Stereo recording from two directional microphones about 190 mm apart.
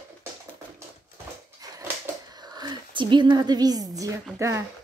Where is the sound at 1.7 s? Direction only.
15° right (ahead or behind).